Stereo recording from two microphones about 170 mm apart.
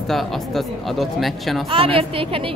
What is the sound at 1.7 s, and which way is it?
Speech, 35° right (ahead or behind).